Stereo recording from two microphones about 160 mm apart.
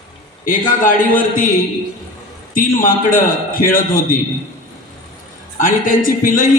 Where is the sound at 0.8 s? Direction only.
60° left (ahead or behind).